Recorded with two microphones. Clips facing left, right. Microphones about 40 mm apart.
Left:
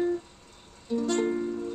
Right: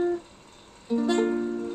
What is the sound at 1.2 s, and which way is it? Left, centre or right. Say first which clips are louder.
Music: right 2 dB; centre.